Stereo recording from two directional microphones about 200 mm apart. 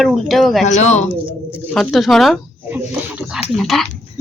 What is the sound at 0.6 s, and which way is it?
Speech, 35° left (ahead or behind).